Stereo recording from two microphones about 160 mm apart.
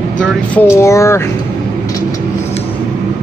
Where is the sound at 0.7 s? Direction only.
20° left (ahead or behind).